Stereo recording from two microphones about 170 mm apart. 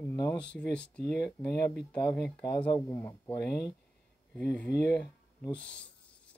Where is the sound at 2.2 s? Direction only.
5° left (ahead or behind).